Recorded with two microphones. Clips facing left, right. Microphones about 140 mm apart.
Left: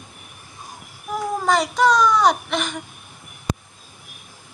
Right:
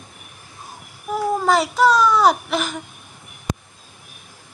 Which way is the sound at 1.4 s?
5° right (ahead or behind).